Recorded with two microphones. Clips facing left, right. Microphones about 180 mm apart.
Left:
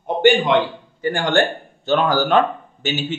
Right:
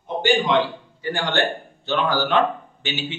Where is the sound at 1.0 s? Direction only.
50° left (ahead or behind).